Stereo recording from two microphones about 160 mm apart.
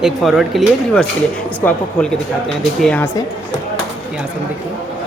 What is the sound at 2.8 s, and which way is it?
Speech, 5° left (ahead or behind).